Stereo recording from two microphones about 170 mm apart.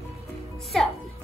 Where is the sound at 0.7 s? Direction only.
5° left (ahead or behind).